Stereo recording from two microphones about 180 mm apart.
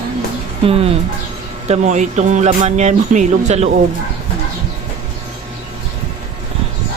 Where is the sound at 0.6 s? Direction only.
35° right (ahead or behind).